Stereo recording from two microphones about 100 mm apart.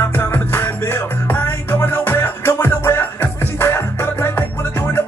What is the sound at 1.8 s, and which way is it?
Music, 20° left (ahead or behind).